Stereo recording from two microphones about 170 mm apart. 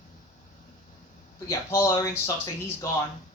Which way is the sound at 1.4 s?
20° left (ahead or behind).